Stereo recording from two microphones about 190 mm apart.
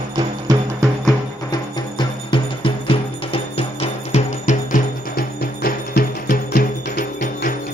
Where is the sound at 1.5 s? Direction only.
25° left (ahead or behind).